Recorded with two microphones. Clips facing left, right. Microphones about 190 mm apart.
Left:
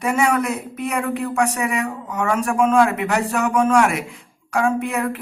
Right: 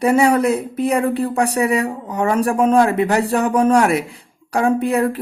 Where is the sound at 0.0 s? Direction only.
35° right (ahead or behind).